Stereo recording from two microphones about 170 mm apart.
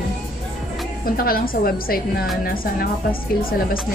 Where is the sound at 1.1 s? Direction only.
60° left (ahead or behind).